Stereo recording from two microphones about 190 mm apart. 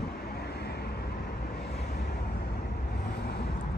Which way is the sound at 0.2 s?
55° left (ahead or behind).